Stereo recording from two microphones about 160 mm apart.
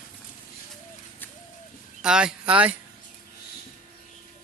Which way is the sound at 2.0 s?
5° right (ahead or behind).